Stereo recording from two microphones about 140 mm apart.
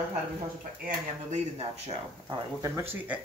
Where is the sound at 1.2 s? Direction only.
50° right (ahead or behind).